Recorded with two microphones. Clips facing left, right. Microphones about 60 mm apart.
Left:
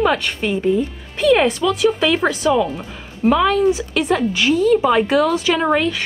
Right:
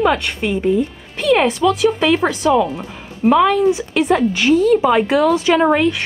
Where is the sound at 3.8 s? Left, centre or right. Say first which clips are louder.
Right 3 dB; right.